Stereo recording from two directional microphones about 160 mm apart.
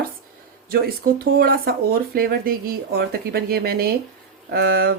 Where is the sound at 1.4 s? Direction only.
70° right (ahead or behind).